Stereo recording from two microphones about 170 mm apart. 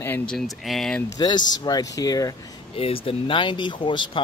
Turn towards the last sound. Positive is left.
turn(degrees=30)  # may be behind; listen again after turning